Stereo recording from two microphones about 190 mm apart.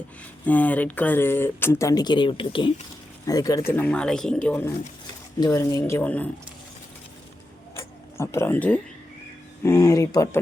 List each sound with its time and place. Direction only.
0.4 s speech: 10° left (ahead or behind)
3.7 s speech: 5° left (ahead or behind)
5.4 s speech: 20° left (ahead or behind)
7.8 s a sound: 15° left (ahead or behind)
9.6 s speech: 15° left (ahead or behind)